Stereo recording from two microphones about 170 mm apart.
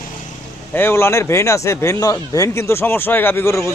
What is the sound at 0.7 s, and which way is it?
A man's voice, 15° left (ahead or behind).